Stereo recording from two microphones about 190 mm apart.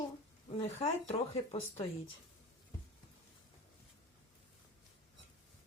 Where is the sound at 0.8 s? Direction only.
35° left (ahead or behind).